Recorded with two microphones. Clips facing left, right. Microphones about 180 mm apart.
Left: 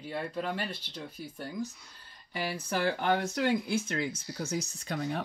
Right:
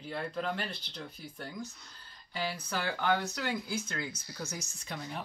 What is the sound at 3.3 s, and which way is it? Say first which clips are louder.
Speech: left 7 dB; 25° left (ahead or behind).